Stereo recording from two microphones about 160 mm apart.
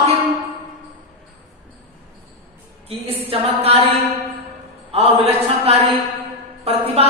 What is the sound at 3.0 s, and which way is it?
Speech, 35° right (ahead or behind).